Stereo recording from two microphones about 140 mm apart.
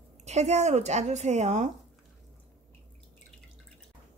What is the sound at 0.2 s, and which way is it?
Speech, 50° right (ahead or behind).